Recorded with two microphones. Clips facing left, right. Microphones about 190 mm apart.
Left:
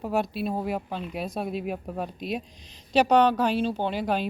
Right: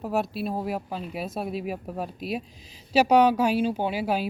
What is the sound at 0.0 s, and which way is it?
Speech, centre (ahead or behind).